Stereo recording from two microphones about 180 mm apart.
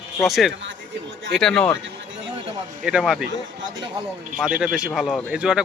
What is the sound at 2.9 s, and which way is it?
Speech, 5° right (ahead or behind).